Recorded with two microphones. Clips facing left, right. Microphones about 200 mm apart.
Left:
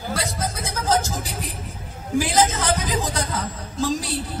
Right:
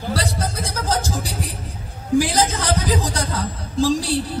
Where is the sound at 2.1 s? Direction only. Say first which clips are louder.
Right 2 dB; 35° right (ahead or behind).